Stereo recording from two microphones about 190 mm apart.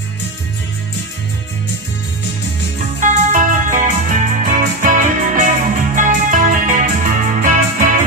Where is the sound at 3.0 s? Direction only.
45° right (ahead or behind).